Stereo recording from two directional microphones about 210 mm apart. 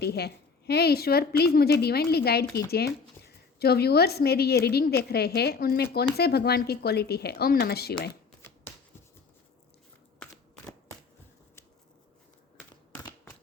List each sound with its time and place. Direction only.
0.0 s a woman's voice: 50° left (ahead or behind)
8.4 s shuffling cards: 10° left (ahead or behind)